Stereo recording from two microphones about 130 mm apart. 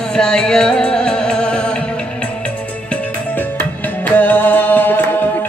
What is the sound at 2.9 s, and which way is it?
Music, 10° left (ahead or behind).